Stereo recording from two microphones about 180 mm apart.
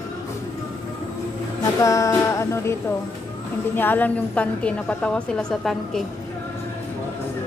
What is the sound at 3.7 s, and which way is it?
A woman's voice, 10° left (ahead or behind).